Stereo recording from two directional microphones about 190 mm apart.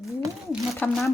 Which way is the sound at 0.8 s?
10° left (ahead or behind).